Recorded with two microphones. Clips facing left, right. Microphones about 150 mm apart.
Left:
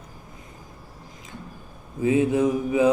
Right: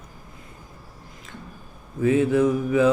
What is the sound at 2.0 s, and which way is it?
Mantra, 15° left (ahead or behind).